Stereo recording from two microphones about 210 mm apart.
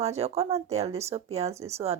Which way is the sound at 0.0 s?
30° right (ahead or behind).